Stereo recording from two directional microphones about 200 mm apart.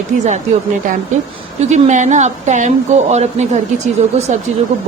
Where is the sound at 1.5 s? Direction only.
35° right (ahead or behind).